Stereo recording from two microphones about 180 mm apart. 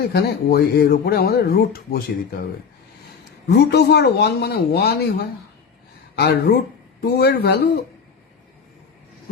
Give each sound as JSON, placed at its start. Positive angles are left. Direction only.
{"t": 0.1, "sound": "speech", "side_deg": 60}
{"t": 3.6, "sound": "speech", "side_deg": 65}